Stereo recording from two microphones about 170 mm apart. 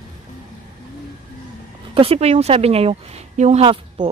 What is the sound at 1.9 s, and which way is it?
Speech, 35° right (ahead or behind).